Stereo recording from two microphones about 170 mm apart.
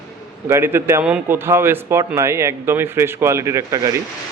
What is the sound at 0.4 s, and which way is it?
A man's voice, 15° right (ahead or behind).